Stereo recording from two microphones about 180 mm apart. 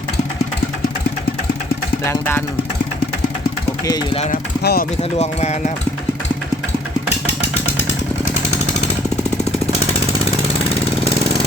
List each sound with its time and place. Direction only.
2.0 s speech: 10° left (ahead or behind)
3.8 s speech: 20° left (ahead or behind)
4.6 s speech: 60° left (ahead or behind)
5.1 s speech: 35° left (ahead or behind)